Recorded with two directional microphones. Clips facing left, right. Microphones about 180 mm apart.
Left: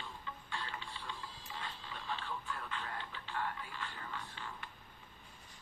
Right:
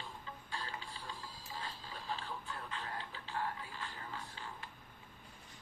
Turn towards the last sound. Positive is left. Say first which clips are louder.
# left 1 dB
turn(degrees=-35)  # may be behind; listen again after turning